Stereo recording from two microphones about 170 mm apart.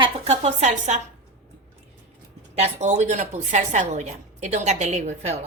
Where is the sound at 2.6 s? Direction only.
40° right (ahead or behind).